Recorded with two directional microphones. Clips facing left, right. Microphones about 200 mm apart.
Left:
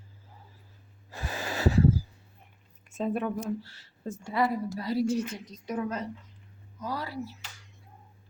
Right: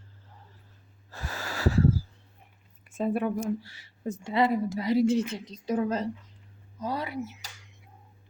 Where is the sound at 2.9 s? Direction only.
10° right (ahead or behind).